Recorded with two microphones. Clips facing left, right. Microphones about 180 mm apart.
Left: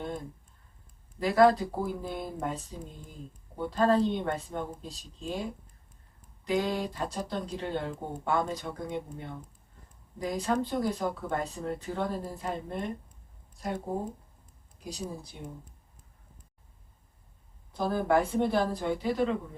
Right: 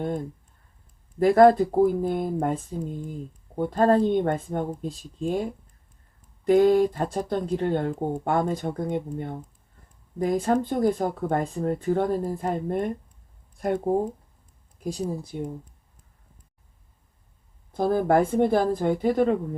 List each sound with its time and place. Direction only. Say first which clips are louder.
1.2 s speech: right 7 dB; 50° right (ahead or behind)
14.8 s speech: right 9 dB; 50° right (ahead or behind)
17.7 s speech: right 6 dB; 50° right (ahead or behind)